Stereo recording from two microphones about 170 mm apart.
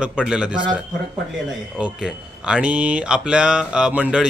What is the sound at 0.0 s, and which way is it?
Speech, 5° right (ahead or behind).